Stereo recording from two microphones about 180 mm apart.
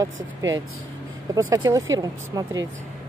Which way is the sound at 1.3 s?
20° right (ahead or behind).